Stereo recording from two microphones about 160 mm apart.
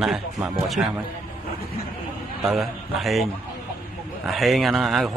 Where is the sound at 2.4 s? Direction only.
Centre (ahead or behind).